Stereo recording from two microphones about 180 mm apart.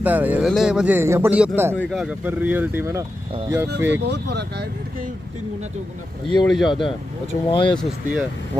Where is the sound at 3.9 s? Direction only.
70° right (ahead or behind).